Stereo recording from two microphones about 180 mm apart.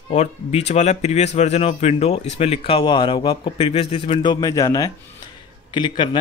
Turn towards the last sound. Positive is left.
turn(degrees=25)  # may be behind; listen again after turning